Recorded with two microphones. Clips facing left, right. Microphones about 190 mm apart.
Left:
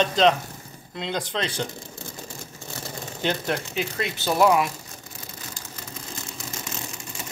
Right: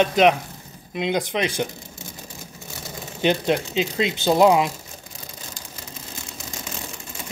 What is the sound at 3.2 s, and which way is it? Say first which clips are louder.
Speech: right 6 dB; 20° right (ahead or behind).